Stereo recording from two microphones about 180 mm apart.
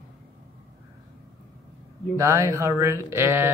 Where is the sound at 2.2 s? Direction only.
15° right (ahead or behind).